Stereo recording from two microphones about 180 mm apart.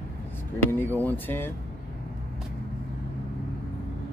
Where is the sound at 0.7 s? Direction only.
10° left (ahead or behind).